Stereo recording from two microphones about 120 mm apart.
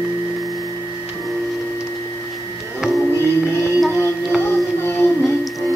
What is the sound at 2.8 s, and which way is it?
Music, 5° right (ahead or behind).